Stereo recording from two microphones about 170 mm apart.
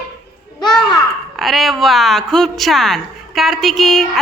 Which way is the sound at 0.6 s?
25° left (ahead or behind).